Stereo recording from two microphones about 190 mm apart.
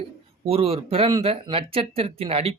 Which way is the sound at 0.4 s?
30° right (ahead or behind).